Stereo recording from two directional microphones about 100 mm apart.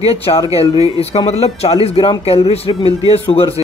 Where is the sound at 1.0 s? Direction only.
90° left.